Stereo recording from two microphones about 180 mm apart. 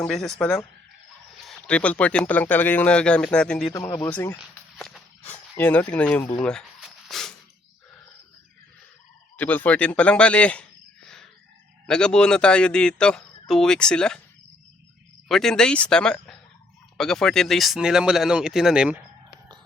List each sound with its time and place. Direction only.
0.1 s speech: centre (ahead or behind)
3.7 s speech: 20° left (ahead or behind)
4.8 s a sound: 5° left (ahead or behind)
9.4 s speech: 10° left (ahead or behind)
15.3 s speech: centre (ahead or behind)